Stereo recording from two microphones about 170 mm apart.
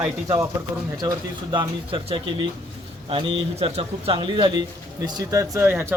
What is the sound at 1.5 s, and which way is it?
Speech, 30° right (ahead or behind).